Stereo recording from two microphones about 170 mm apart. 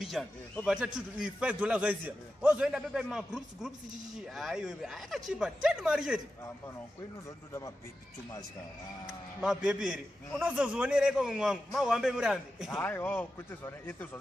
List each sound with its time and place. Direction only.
0.0 s a man's voice: centre (ahead or behind)
7.2 s speech: 20° left (ahead or behind)
9.0 s a man's voice: 5° right (ahead or behind)
12.7 s speech: 10° left (ahead or behind)